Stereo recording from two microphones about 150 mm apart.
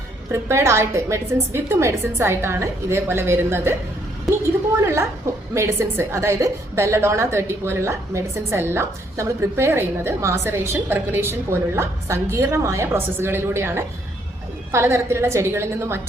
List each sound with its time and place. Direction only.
0.3 s a woman's voice: 20° right (ahead or behind)
4.8 s a woman's voice: 15° right (ahead or behind)